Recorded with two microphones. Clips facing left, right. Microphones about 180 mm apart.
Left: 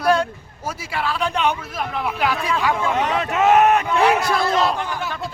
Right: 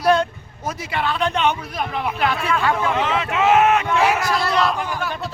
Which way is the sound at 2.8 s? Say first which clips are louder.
Even; 40° left (ahead or behind).